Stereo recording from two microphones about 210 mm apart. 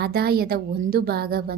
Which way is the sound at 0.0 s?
50° right (ahead or behind).